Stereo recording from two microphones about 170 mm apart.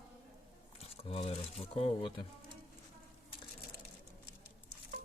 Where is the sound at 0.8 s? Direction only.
35° left (ahead or behind).